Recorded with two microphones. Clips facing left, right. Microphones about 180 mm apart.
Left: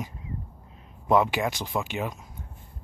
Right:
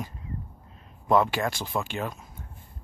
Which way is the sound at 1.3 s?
15° left (ahead or behind).